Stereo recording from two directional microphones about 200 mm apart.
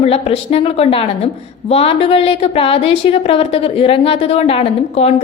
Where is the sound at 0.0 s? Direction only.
30° left (ahead or behind).